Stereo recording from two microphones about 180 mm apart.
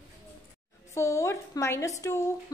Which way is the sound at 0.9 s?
15° left (ahead or behind).